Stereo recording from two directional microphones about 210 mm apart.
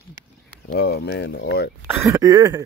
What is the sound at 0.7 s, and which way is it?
Speech, 50° left (ahead or behind).